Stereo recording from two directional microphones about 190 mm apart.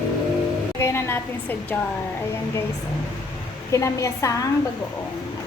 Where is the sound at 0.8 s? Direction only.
10° left (ahead or behind).